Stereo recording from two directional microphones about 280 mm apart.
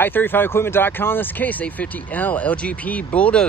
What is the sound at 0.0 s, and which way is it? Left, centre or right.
Speech, centre.